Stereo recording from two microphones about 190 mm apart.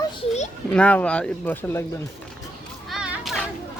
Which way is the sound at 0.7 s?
5° left (ahead or behind).